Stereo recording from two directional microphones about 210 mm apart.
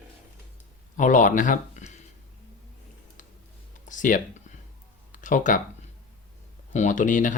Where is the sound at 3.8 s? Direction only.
40° left (ahead or behind).